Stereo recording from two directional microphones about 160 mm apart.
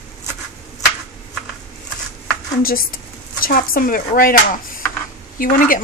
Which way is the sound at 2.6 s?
65° left (ahead or behind).